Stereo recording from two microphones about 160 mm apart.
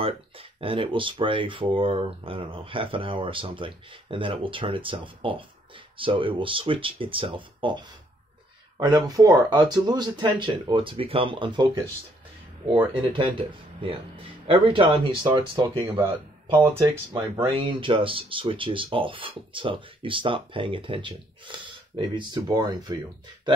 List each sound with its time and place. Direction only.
0.0 s speech: 35° right (ahead or behind)
12.7 s speech: 30° right (ahead or behind)
16.6 s speech: 20° right (ahead or behind)
17.5 s speech: 30° right (ahead or behind)